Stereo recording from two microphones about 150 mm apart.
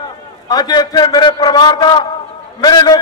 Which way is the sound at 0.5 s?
25° left (ahead or behind).